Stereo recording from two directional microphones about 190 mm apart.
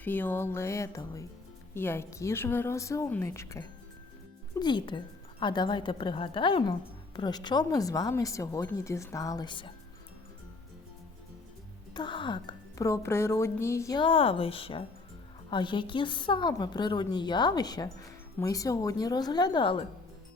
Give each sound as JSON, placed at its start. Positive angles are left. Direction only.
{"t": 0.0, "sound": "a woman's voice", "side_deg": 10}
{"t": 11.9, "sound": "a woman's voice", "side_deg": 25}